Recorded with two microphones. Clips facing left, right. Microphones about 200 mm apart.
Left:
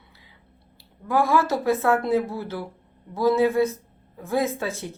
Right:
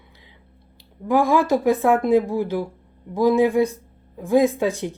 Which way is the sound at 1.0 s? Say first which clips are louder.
Right 3 dB; 15° right (ahead or behind).